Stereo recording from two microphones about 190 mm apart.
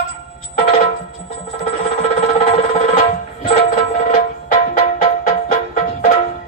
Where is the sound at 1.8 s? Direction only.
45° left (ahead or behind).